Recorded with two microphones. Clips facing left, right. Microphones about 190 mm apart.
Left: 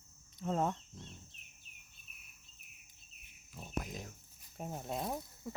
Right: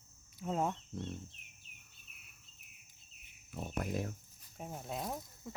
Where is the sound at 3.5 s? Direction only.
60° right (ahead or behind).